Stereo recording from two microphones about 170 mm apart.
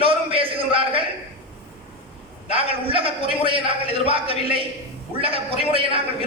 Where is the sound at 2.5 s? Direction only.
35° right (ahead or behind).